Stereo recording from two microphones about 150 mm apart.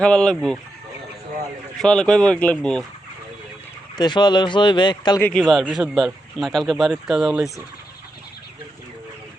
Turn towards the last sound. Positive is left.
turn(degrees=-5)  # may be behind; listen again after turning